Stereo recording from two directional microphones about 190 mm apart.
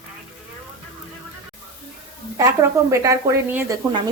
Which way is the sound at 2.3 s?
15° right (ahead or behind).